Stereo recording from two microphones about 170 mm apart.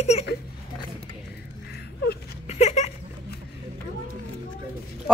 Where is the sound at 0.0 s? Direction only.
40° left (ahead or behind).